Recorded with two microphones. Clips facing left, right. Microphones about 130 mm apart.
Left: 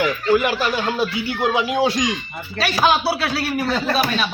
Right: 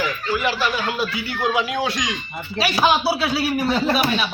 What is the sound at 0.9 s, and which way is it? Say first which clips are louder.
Speech: left 3 dB; 25° left (ahead or behind).